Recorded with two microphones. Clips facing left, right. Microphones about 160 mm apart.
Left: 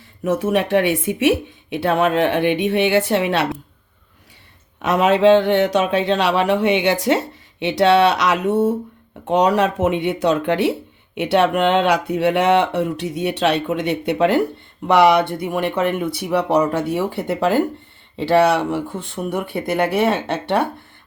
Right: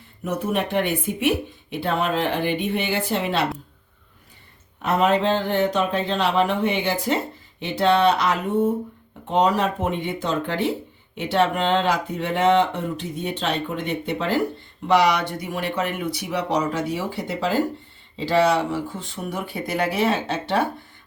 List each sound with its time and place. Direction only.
0.3 s speech: 90° left; by 3.4 s 70° left (ahead or behind)
4.8 s speech: 85° left; by 20.7 s 60° left (ahead or behind)